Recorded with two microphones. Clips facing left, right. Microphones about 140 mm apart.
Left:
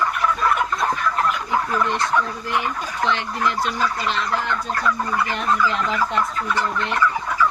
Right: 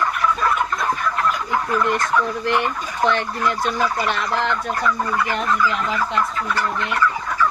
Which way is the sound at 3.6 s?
60° right (ahead or behind).